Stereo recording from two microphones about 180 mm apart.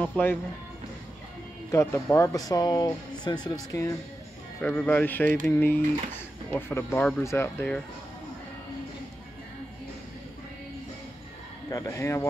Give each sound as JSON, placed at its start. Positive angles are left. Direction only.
{"t": 0.0, "sound": "speech", "side_deg": 10}
{"t": 1.7, "sound": "speech", "side_deg": 15}
{"t": 4.6, "sound": "speech", "side_deg": 10}
{"t": 11.7, "sound": "speech", "side_deg": 15}